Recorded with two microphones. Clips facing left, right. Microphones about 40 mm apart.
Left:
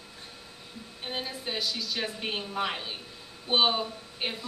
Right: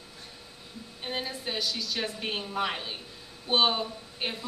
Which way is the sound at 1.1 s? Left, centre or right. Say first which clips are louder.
Right 1 dB; centre.